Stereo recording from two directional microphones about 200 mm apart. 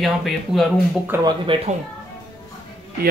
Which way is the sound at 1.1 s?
10° right (ahead or behind).